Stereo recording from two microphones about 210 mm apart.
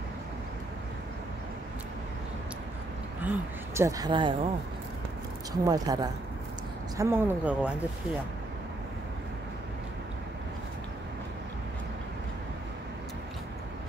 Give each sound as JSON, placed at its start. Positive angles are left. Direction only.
{"t": 3.3, "sound": "speech", "side_deg": -15}
{"t": 5.5, "sound": "speech", "side_deg": -20}